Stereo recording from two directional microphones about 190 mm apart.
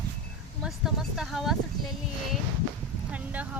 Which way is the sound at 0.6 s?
Centre (ahead or behind).